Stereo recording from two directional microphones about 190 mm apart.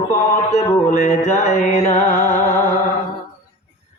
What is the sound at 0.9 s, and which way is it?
Mantra, 40° left (ahead or behind).